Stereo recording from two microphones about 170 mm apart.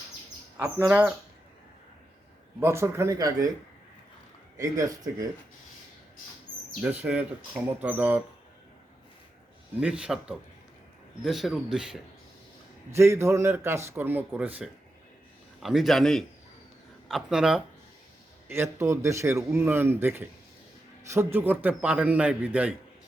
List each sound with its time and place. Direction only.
0.5 s speech: 10° right (ahead or behind)
2.6 s speech: 15° right (ahead or behind)
4.5 s speech: 20° right (ahead or behind)
6.8 s speech: 10° right (ahead or behind)
9.8 s a man's voice: 5° right (ahead or behind)
12.9 s a man's voice: 15° right (ahead or behind)
18.4 s speech: 15° right (ahead or behind)